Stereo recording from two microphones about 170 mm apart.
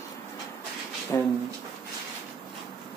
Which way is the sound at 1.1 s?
20° left (ahead or behind).